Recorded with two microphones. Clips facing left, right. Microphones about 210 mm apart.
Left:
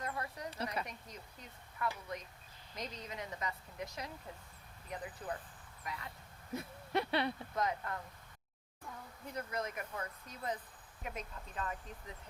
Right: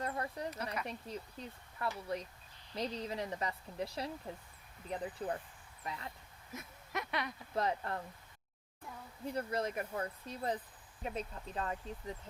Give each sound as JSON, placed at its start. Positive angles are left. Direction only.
{"t": 0.0, "sound": "a sound", "side_deg": -35}
{"t": 0.5, "sound": "speech", "side_deg": 30}
{"t": 0.9, "sound": "speech", "side_deg": -30}
{"t": 6.5, "sound": "a sound", "side_deg": 30}
{"t": 7.5, "sound": "speech", "side_deg": -30}
{"t": 9.3, "sound": "speech", "side_deg": -30}